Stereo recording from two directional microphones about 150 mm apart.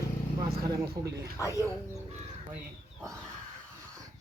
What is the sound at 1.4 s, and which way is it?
Speech, 20° left (ahead or behind).